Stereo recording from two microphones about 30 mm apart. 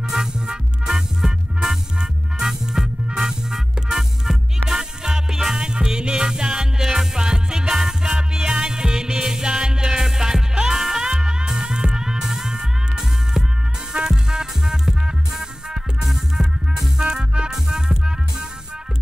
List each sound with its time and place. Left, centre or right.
0.1 s music: centre
5.6 s music: right
10.8 s music: centre
11.1 s music: right
17.1 s music: right
17.5 s music: centre